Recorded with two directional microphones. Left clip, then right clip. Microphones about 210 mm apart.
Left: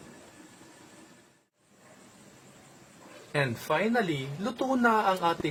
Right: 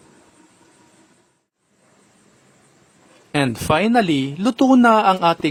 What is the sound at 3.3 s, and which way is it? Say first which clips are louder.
Speech: right 10 dB; 50° right (ahead or behind).